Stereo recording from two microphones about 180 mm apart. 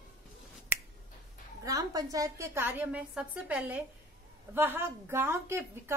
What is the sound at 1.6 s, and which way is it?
A woman's voice, 20° right (ahead or behind).